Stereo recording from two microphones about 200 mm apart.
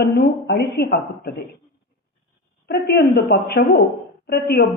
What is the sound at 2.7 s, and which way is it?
A woman's voice, 50° left (ahead or behind).